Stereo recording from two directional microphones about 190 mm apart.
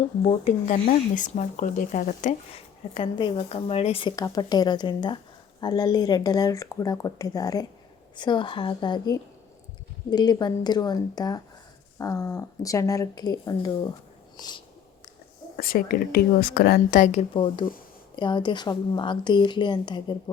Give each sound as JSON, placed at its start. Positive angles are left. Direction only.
{"t": 0.2, "sound": "speech", "side_deg": 30}
{"t": 2.9, "sound": "speech", "side_deg": 25}
{"t": 14.3, "sound": "a sound", "side_deg": 20}
{"t": 15.5, "sound": "a woman's voice", "side_deg": 50}